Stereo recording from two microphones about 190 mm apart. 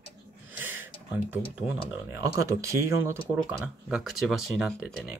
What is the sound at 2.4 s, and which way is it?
Speech, 15° right (ahead or behind).